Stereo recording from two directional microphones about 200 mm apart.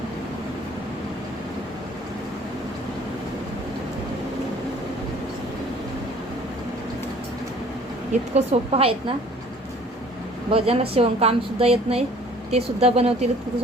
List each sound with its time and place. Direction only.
8.4 s a woman's voice: 30° right (ahead or behind)
10.5 s speech: 30° right (ahead or behind)